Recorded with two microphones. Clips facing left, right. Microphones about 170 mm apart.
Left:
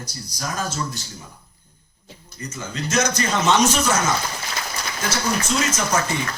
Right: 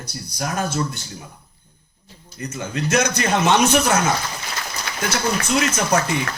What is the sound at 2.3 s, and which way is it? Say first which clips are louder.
Speech: right 4 dB; 60° right (ahead or behind).